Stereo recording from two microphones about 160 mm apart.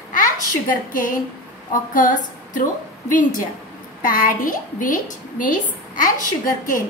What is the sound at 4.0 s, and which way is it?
A woman's voice, 60° left (ahead or behind).